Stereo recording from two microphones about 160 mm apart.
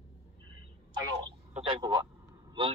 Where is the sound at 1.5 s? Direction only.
35° right (ahead or behind).